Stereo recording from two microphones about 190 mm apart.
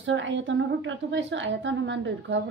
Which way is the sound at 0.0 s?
80° right.